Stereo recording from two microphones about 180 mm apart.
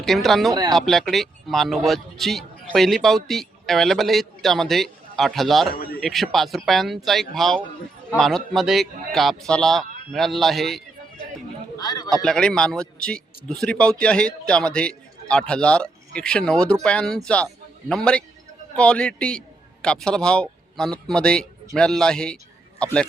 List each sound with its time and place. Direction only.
0.0 s speech: centre (ahead or behind)
5.7 s speech: 55° left (ahead or behind)
6.0 s speech: centre (ahead or behind)
11.8 s speech: 20° left (ahead or behind)
12.0 s a man's voice: 5° left (ahead or behind)